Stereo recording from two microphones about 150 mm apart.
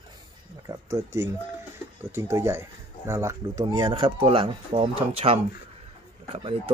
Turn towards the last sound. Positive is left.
turn(degrees=-40)  # may be behind; listen again after turning